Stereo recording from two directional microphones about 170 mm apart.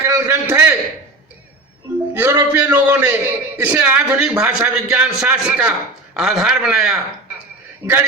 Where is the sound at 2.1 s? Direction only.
10° right (ahead or behind).